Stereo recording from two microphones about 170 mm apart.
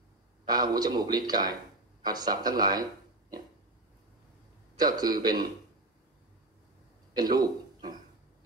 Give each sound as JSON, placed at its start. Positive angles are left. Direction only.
{"t": 0.5, "sound": "a man's voice", "side_deg": -25}
{"t": 4.7, "sound": "a man's voice", "side_deg": -25}
{"t": 7.2, "sound": "a man's voice", "side_deg": -25}